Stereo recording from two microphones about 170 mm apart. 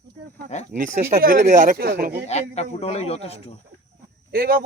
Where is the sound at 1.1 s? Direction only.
60° right (ahead or behind).